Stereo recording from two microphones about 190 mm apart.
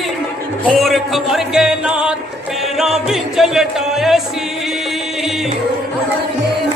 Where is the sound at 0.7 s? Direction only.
Centre (ahead or behind).